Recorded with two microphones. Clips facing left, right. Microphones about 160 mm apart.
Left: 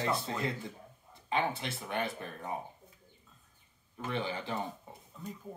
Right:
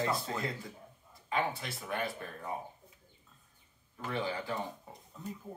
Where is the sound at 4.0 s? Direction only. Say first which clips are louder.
Even; 25° left (ahead or behind).